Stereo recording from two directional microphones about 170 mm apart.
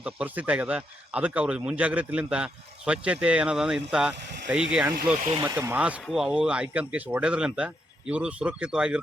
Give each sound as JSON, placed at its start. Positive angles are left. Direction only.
{"t": 0.0, "sound": "speech", "side_deg": -10}
{"t": 5.1, "sound": "speech", "side_deg": -40}
{"t": 5.4, "sound": "speech", "side_deg": -15}